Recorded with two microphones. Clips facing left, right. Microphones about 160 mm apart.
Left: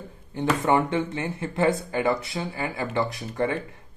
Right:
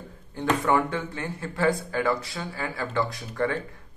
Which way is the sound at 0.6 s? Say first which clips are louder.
Left 3 dB; 20° left (ahead or behind).